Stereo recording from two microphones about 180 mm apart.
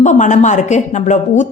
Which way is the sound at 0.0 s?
45° left (ahead or behind).